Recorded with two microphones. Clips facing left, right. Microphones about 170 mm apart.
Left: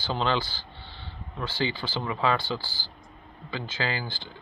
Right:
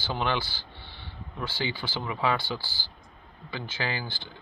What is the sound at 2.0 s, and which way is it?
Speech, 15° right (ahead or behind).